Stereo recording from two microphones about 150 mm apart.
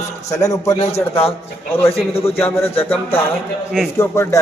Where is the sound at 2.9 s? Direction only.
15° left (ahead or behind).